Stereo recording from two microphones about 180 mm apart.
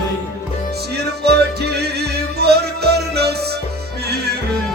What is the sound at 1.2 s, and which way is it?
Music, 65° right (ahead or behind).